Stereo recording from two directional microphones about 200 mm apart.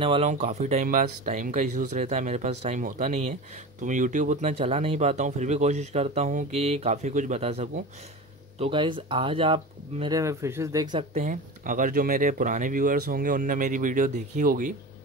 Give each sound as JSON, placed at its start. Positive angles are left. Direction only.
{"t": 0.0, "sound": "speech", "side_deg": -30}
{"t": 11.2, "sound": "speech", "side_deg": -40}